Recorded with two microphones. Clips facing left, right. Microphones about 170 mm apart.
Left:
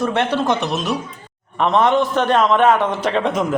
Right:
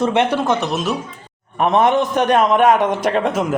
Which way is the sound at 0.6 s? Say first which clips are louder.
Right 1 dB; centre (ahead or behind).